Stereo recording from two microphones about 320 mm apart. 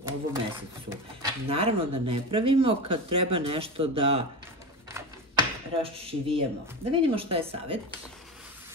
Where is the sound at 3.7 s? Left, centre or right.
Centre.